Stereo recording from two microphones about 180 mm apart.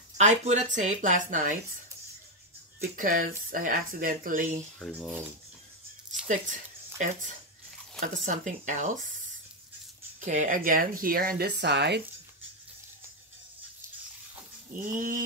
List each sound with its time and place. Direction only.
0.2 s speech: 40° right (ahead or behind)
2.8 s speech: 50° right (ahead or behind)
4.7 s speech: 5° left (ahead or behind)
6.2 s speech: 45° right (ahead or behind)
10.2 s speech: 45° right (ahead or behind); by 12.0 s 70° right (ahead or behind)
14.8 s speech: 50° right (ahead or behind)